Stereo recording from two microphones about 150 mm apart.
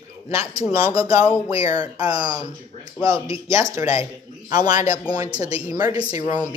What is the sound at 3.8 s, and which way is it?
Speech, 40° left (ahead or behind).